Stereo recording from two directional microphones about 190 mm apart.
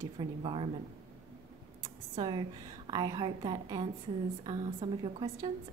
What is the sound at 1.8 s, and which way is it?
A woman's voice, 25° right (ahead or behind).